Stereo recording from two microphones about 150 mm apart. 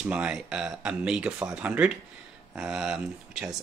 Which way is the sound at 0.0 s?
5° right (ahead or behind).